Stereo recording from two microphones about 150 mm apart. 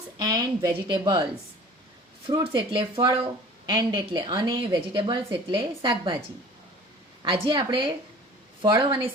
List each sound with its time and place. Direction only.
0.2 s a woman's voice: 25° right (ahead or behind)
2.2 s a woman's voice: 35° right (ahead or behind)
7.2 s a woman's voice: 35° right (ahead or behind)